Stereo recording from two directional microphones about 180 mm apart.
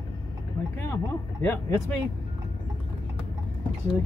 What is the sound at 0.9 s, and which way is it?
Speech, 15° left (ahead or behind).